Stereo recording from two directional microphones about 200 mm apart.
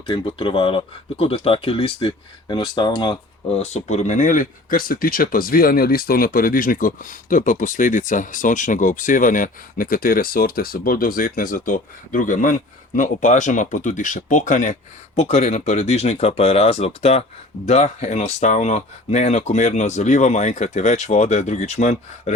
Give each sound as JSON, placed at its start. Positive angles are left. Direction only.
{"t": 0.1, "sound": "speech", "side_deg": 25}